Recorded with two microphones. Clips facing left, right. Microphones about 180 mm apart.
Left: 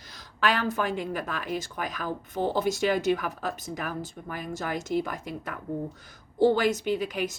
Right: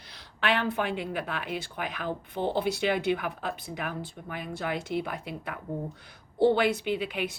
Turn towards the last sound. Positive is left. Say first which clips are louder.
# left 2 dB
turn(degrees=40)  # may be behind; listen again after turning